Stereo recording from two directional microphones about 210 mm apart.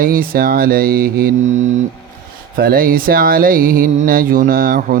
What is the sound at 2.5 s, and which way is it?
Mantra, 45° right (ahead or behind).